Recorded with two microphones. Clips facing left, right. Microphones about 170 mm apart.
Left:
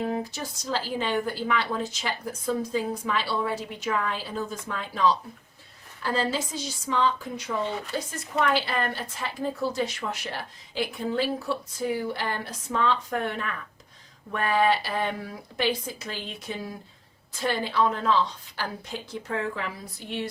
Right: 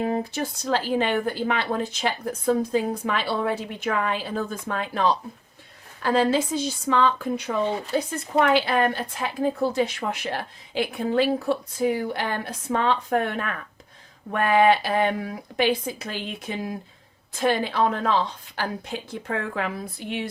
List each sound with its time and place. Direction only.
0.0 s a woman's voice: 55° right (ahead or behind)